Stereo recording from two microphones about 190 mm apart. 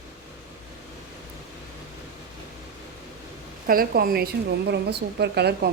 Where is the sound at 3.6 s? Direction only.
50° right (ahead or behind).